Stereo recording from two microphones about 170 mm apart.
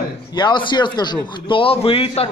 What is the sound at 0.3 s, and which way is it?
A man's voice, 25° left (ahead or behind).